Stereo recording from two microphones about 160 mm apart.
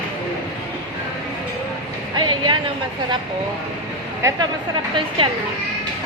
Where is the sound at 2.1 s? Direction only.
30° right (ahead or behind).